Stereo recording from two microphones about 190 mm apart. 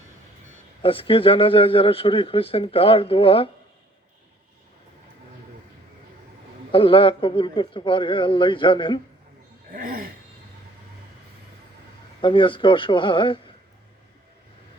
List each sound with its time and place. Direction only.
0.8 s a man's voice: 30° left (ahead or behind)
6.7 s a man's voice: 25° left (ahead or behind)
9.7 s a sound: 45° right (ahead or behind)
12.2 s a man's voice: 25° left (ahead or behind)